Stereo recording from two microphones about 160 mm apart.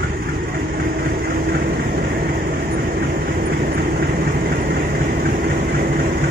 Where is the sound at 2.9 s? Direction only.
65° right (ahead or behind).